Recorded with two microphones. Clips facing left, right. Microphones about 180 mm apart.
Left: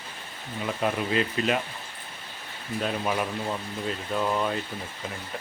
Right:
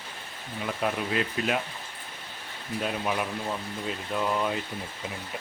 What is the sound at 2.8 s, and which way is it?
Speech, centre (ahead or behind).